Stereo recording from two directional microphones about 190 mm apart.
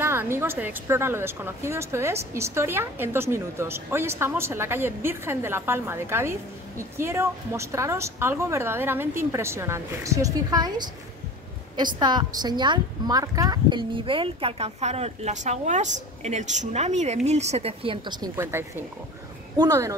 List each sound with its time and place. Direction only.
0.0 s a woman's voice: 10° right (ahead or behind)